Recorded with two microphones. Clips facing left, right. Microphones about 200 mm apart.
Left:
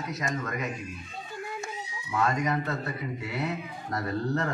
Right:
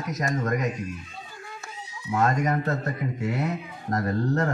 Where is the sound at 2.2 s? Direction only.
45° right (ahead or behind).